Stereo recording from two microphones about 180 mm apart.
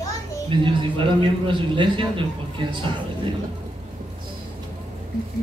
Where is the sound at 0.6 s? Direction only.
25° right (ahead or behind).